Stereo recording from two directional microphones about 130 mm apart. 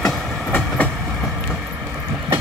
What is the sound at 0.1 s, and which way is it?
Train, 5° left (ahead or behind).